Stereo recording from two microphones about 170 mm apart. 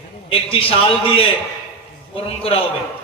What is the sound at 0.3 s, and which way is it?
A man's voice, 35° left (ahead or behind).